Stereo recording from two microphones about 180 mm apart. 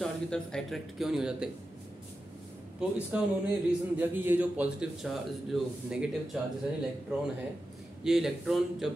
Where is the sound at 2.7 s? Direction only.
5° right (ahead or behind).